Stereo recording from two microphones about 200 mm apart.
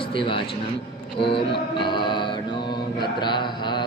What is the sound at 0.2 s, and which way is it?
Speech, 25° left (ahead or behind).